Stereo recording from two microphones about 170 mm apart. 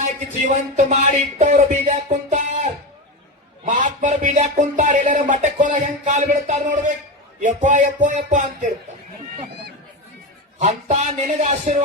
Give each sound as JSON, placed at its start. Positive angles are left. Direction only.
{"t": 0.0, "sound": "music", "side_deg": -50}
{"t": 3.7, "sound": "music", "side_deg": -45}
{"t": 10.6, "sound": "music", "side_deg": -40}